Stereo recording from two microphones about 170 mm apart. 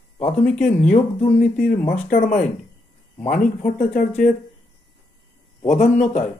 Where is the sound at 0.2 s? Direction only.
45° left (ahead or behind).